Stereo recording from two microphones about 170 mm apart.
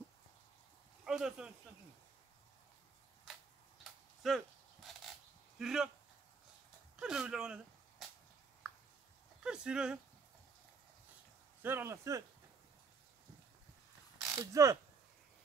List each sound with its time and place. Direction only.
1.0 s speech: 5° right (ahead or behind)
3.3 s tick-tock: centre (ahead or behind)
3.8 s a sound: centre (ahead or behind)
5.6 s speech: 5° right (ahead or behind)
7.0 s speech: 5° right (ahead or behind)
8.6 s a sound: 5° right (ahead or behind)
9.4 s speech: 5° right (ahead or behind)
11.6 s speech: 15° right (ahead or behind)
14.2 s speech: 20° right (ahead or behind)